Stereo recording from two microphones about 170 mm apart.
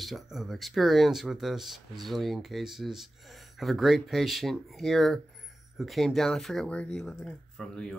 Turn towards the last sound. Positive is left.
turn(degrees=0)  # may be behind; listen again after turning